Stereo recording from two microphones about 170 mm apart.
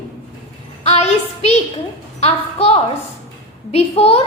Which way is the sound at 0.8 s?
40° left (ahead or behind).